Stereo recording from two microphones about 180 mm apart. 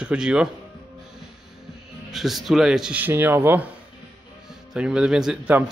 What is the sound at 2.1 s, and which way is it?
Speech, centre (ahead or behind).